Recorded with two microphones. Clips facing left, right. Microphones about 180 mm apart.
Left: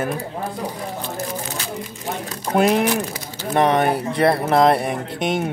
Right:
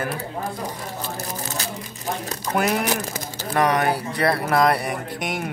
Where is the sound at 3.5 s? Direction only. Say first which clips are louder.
Left 3 dB; 25° left (ahead or behind).